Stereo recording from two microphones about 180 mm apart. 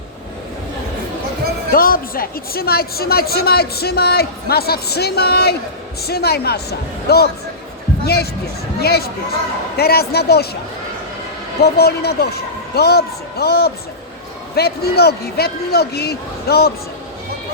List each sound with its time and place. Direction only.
1.7 s a woman's voice: 55° left (ahead or behind)
11.6 s a woman's voice: 60° left (ahead or behind)